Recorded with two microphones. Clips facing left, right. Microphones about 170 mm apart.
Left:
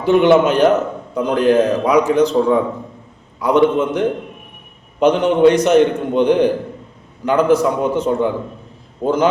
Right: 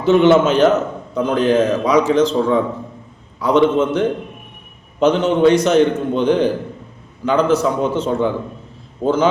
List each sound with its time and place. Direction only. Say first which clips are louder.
0.0 s a man's voice: even; 15° left (ahead or behind)